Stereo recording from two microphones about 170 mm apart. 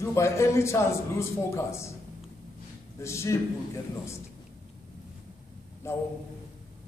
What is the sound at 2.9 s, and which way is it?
Speech, 15° left (ahead or behind).